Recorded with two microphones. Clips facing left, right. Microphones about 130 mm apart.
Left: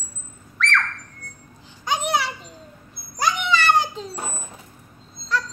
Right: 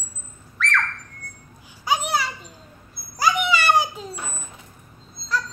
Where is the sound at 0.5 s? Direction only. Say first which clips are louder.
Left 1 dB; 5° right (ahead or behind).